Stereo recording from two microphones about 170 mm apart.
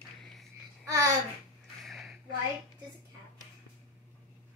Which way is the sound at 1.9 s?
Centre (ahead or behind).